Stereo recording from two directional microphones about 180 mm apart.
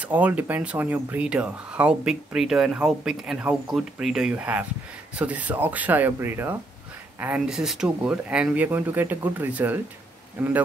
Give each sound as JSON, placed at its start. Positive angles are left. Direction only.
{"t": 0.0, "sound": "speech", "side_deg": -10}